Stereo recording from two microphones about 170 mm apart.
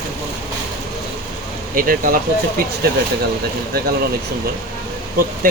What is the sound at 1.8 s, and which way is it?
Speech, 55° right (ahead or behind).